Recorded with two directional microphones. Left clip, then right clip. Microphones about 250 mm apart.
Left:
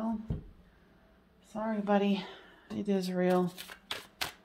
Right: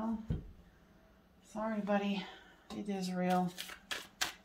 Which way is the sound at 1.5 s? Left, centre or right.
Left.